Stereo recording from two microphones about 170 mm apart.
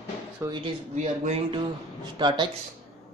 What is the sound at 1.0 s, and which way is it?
Speech, 40° right (ahead or behind).